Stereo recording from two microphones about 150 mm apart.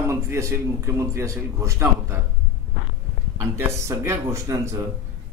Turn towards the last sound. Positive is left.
turn(degrees=-20)  # may be behind; listen again after turning